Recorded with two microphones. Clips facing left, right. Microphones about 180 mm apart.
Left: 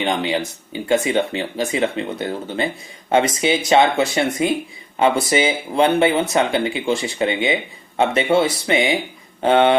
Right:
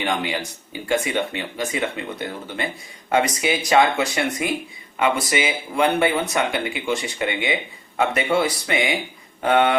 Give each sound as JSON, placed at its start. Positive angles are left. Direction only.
{"t": 0.0, "sound": "speech", "side_deg": 25}